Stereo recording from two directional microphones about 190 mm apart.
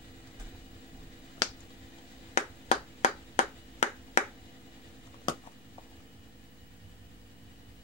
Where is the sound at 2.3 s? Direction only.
35° left (ahead or behind).